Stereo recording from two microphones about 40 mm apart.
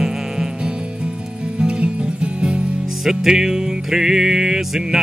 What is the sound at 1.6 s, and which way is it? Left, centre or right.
Music, right.